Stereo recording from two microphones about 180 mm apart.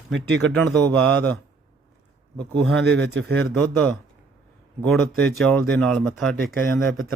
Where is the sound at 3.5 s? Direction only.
5° left (ahead or behind).